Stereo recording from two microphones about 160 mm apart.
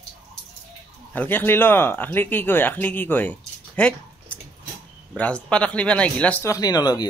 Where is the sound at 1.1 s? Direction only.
10° left (ahead or behind).